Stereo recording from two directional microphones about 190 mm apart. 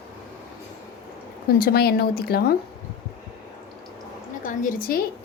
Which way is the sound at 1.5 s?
55° left (ahead or behind).